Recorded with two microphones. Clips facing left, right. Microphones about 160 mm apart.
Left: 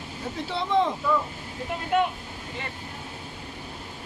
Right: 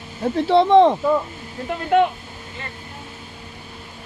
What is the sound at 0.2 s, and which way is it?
Speech, 70° right (ahead or behind).